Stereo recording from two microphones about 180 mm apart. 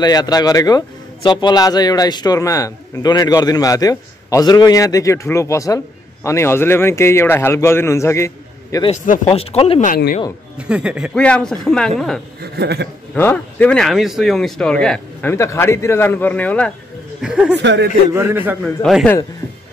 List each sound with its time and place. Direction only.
0.0 s a man's voice: 20° left (ahead or behind)
8.9 s speech: 50° left (ahead or behind)
9.3 s speech: 35° left (ahead or behind)
9.8 s speech: 55° left (ahead or behind)
10.6 s speech: 5° right (ahead or behind)
11.1 s speech: 5° left (ahead or behind)
12.4 s a man's voice: 65° right (ahead or behind)
13.1 s speech: 10° left (ahead or behind)
15.3 s a man's voice: 15° left (ahead or behind)
17.2 s speech: 5° right (ahead or behind)
17.6 s a man's voice: 75° right (ahead or behind)
18.1 s a man's voice: 15° right (ahead or behind)
18.6 s speech: centre (ahead or behind)